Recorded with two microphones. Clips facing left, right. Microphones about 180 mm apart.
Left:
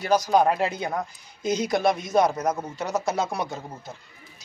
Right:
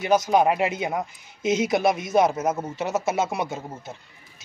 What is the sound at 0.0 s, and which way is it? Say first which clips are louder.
Speech: right 1 dB; 20° right (ahead or behind).